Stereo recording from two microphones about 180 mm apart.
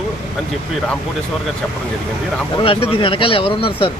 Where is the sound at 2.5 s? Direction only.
30° left (ahead or behind).